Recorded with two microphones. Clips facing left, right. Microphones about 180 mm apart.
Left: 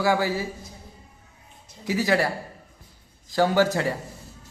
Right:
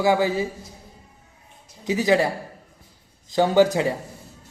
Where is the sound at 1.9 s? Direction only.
20° right (ahead or behind).